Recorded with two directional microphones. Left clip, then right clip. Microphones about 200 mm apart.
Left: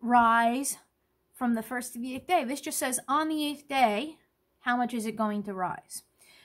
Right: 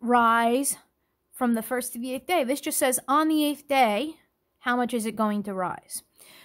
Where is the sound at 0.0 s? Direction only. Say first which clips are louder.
Right 2 dB; 45° right (ahead or behind).